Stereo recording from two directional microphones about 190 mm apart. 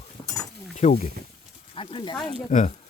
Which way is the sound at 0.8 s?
40° left (ahead or behind).